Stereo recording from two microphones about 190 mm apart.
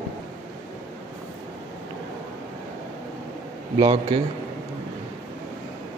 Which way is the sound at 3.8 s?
25° right (ahead or behind).